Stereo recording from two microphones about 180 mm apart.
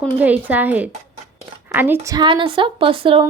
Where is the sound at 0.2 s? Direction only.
10° right (ahead or behind).